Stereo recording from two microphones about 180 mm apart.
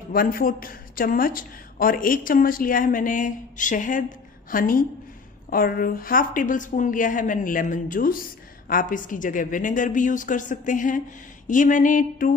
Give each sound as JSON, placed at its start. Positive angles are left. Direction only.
{"t": 0.1, "sound": "speech", "side_deg": 55}